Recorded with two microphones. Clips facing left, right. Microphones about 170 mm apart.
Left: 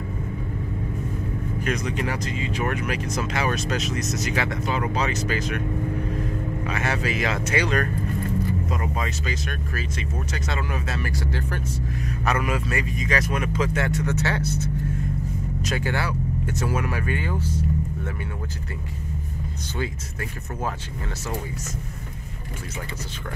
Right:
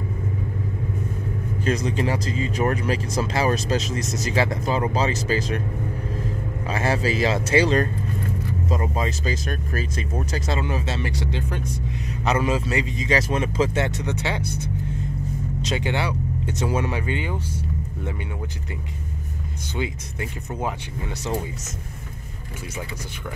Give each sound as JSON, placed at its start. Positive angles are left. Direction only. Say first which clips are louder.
{"t": 1.6, "sound": "speech", "louder": "right 4 dB", "side_deg": -30}
{"t": 6.6, "sound": "speech", "louder": "right 5 dB", "side_deg": -30}
{"t": 19.8, "sound": "speech", "louder": "right 2 dB", "side_deg": -20}